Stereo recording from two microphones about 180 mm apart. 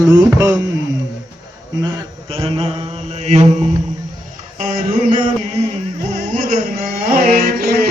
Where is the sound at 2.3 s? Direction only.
30° right (ahead or behind).